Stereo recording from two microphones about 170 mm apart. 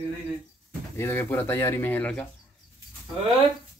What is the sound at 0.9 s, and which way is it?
Speech, 15° left (ahead or behind).